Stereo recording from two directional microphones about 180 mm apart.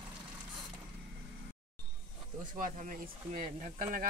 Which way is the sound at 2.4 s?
45° right (ahead or behind).